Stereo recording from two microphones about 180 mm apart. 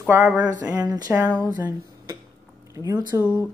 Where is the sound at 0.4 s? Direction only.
20° right (ahead or behind).